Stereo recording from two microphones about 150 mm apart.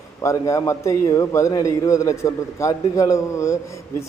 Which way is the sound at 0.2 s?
20° left (ahead or behind).